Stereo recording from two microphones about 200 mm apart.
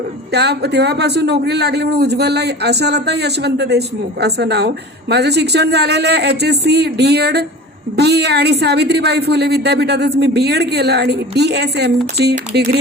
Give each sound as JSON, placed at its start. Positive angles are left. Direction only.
{"t": 0.3, "sound": "speech", "side_deg": -55}